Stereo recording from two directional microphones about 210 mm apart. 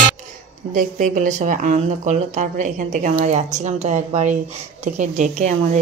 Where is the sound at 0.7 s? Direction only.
40° right (ahead or behind).